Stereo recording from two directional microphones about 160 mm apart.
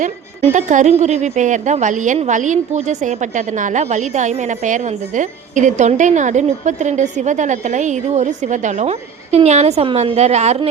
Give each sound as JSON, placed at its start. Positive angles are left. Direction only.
{"t": 0.4, "sound": "a woman's voice", "side_deg": -50}